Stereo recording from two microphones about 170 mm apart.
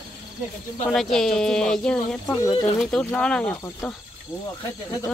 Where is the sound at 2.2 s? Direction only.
20° left (ahead or behind).